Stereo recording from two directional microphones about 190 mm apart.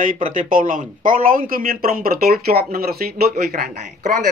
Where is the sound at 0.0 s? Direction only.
45° right (ahead or behind).